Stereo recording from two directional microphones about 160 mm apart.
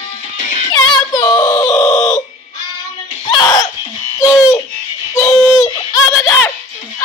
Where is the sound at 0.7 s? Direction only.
25° left (ahead or behind).